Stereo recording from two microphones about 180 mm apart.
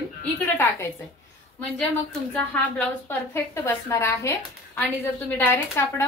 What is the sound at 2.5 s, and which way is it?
A woman's voice, 10° left (ahead or behind).